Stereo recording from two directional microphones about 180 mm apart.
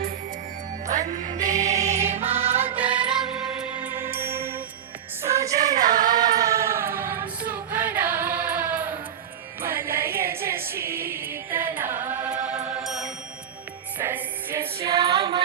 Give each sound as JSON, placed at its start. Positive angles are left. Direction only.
{"t": 0.9, "sound": "music", "side_deg": -45}
{"t": 1.8, "sound": "music", "side_deg": -15}
{"t": 5.5, "sound": "music", "side_deg": -40}
{"t": 6.1, "sound": "a capella", "side_deg": -20}
{"t": 7.8, "sound": "music", "side_deg": -10}
{"t": 14.8, "sound": "music", "side_deg": -30}